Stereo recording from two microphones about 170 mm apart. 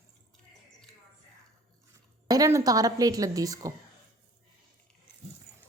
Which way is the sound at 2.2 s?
20° right (ahead or behind).